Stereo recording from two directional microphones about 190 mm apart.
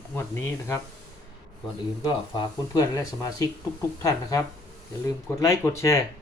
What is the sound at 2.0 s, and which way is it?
Speech, 25° left (ahead or behind).